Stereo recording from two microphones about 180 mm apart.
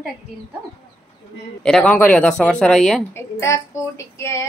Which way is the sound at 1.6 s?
5° left (ahead or behind).